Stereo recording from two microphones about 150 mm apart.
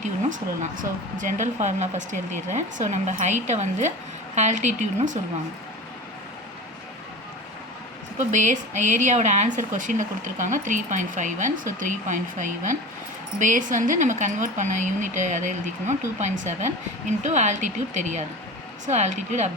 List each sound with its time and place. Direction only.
0.0 s a woman's voice: 55° right (ahead or behind)
8.3 s a woman's voice: 55° right (ahead or behind)